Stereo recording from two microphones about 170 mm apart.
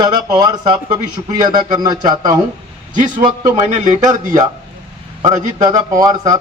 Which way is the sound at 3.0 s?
45° right (ahead or behind).